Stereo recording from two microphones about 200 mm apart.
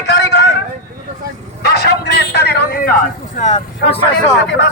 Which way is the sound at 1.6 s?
55° left (ahead or behind).